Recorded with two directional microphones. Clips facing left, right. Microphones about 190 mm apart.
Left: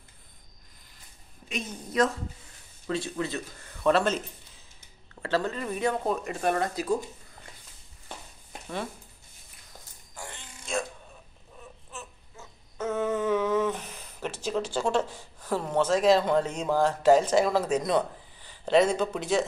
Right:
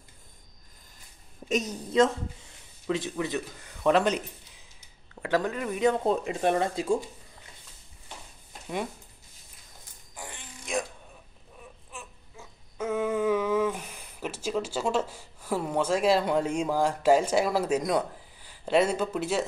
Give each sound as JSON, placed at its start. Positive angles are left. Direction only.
{"t": 1.5, "sound": "a woman's voice", "side_deg": -40}
{"t": 2.9, "sound": "speech", "side_deg": -15}
{"t": 5.2, "sound": "speech", "side_deg": -15}
{"t": 10.1, "sound": "fart", "side_deg": -15}
{"t": 11.9, "sound": "babbling", "side_deg": -10}